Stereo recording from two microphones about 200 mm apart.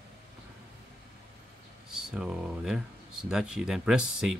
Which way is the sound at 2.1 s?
5° right (ahead or behind).